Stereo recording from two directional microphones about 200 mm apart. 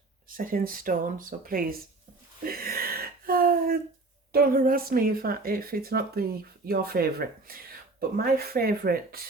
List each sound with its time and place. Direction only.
0.3 s speech: 45° right (ahead or behind)
2.4 s gasp: 45° right (ahead or behind)
4.3 s speech: 45° right (ahead or behind)